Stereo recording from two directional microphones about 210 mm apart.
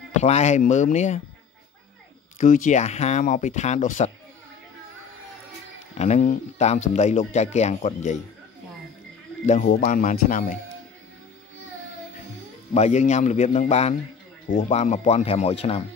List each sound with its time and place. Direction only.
0.2 s speech: 30° left (ahead or behind)
2.3 s speech: 40° left (ahead or behind)
5.9 s speech: 35° left (ahead or behind)
9.5 s speech: 35° left (ahead or behind)
12.7 s speech: 35° left (ahead or behind)